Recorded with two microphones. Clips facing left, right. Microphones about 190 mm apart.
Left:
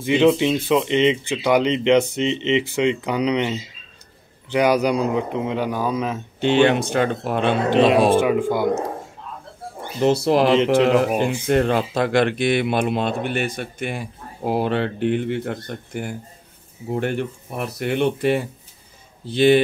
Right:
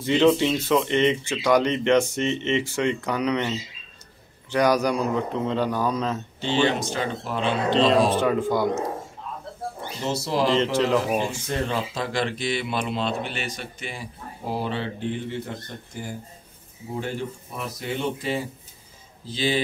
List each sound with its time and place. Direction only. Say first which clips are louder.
0.0 s speech: left 2 dB; 10° left (ahead or behind)
6.4 s speech: left 7 dB; 60° left (ahead or behind)
8.2 s speech: left 3 dB; 10° left (ahead or behind)
9.9 s speech: left 9 dB; 60° left (ahead or behind)